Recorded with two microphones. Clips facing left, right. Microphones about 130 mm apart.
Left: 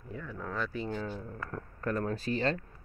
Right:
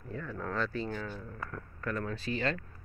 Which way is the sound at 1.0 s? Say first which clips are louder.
Left 3 dB; 25° left (ahead or behind).